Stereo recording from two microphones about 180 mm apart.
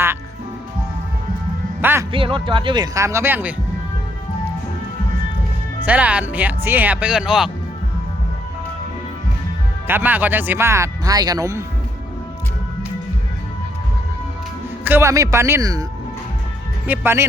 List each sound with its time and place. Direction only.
1.8 s speech: 10° right (ahead or behind)
2.1 s speech: 30° right (ahead or behind); by 3.5 s 10° right (ahead or behind)
5.8 s speech: 10° right (ahead or behind)
9.8 s speech: 10° right (ahead or behind)
14.8 s speech: 15° right (ahead or behind)
16.8 s speech: 10° right (ahead or behind)